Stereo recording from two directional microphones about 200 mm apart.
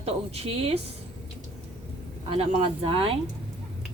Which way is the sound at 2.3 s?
25° right (ahead or behind).